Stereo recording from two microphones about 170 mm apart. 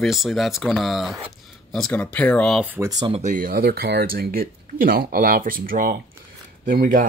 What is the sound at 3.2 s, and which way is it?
Speech, 50° right (ahead or behind).